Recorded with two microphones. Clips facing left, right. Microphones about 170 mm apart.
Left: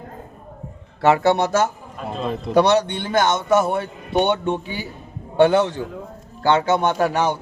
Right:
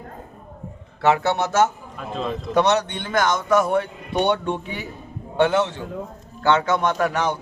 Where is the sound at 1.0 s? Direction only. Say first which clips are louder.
Left 3 dB; 40° left (ahead or behind).